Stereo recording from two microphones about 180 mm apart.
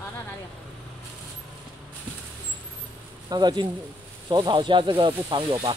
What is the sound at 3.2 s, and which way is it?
Speech, 25° right (ahead or behind).